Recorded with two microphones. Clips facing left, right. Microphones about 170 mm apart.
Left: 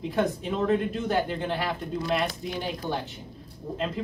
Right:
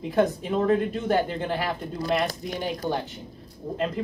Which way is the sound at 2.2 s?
40° right (ahead or behind).